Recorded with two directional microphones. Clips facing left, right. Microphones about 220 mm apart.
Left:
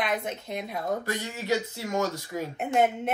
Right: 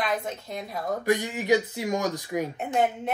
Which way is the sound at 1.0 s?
15° right (ahead or behind).